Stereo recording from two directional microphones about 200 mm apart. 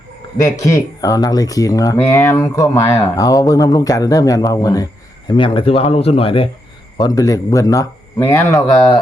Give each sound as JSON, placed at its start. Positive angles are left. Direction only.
{"t": 0.4, "sound": "speech", "side_deg": 15}